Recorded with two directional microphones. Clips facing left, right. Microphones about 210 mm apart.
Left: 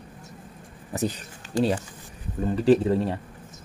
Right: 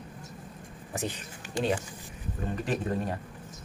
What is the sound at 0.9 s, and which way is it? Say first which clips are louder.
Speech: left 6 dB; 40° left (ahead or behind).